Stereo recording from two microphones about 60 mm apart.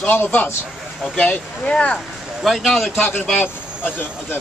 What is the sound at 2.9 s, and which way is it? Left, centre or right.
Speech, left.